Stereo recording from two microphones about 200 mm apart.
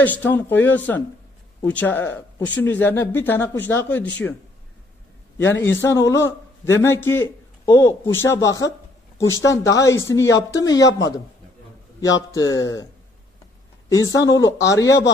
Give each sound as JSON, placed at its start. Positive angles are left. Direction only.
{"t": 0.0, "sound": "speech", "side_deg": 10}
{"t": 5.4, "sound": "speech", "side_deg": 10}
{"t": 12.3, "sound": "speech", "side_deg": 20}
{"t": 13.8, "sound": "speech", "side_deg": 15}